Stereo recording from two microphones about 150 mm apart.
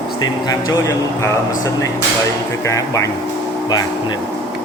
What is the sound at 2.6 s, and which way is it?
Speech, 20° left (ahead or behind).